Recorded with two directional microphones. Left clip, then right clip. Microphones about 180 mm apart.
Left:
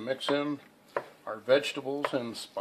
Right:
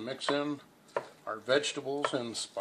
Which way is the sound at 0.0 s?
35° left (ahead or behind).